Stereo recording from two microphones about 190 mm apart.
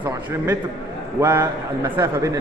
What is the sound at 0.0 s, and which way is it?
A man's voice, 10° right (ahead or behind).